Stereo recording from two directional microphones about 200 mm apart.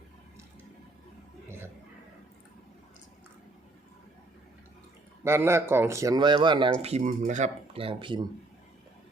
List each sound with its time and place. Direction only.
1.5 s a sound: 10° right (ahead or behind)
5.2 s speech: 10° right (ahead or behind)
6.8 s speech: 35° right (ahead or behind)